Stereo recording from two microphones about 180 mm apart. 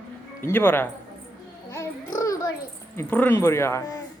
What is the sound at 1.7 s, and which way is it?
Babbling, 15° left (ahead or behind).